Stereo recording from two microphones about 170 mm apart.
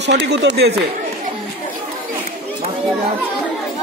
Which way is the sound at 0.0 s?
90° right.